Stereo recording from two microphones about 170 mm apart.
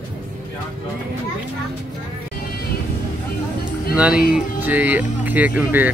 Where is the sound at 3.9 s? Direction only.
5° right (ahead or behind).